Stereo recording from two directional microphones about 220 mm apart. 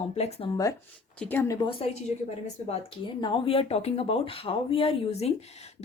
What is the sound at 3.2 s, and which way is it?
Speech, 25° left (ahead or behind).